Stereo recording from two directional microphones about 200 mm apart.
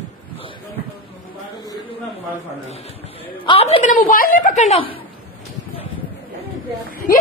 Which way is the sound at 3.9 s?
45° left (ahead or behind).